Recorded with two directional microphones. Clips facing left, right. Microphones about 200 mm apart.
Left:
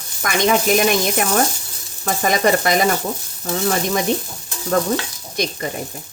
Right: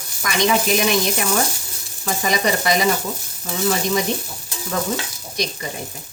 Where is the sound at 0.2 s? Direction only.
50° left (ahead or behind).